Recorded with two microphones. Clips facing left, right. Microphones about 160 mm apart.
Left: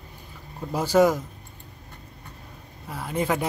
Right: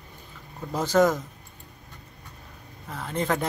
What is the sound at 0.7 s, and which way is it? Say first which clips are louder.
Speech: left 2 dB; 10° left (ahead or behind).